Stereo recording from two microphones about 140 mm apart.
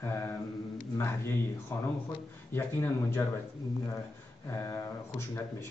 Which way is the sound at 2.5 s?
20° left (ahead or behind).